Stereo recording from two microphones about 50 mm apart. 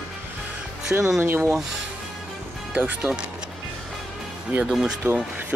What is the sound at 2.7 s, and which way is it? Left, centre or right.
Speech, right.